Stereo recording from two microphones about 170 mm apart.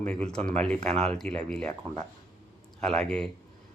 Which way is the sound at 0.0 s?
5° left (ahead or behind).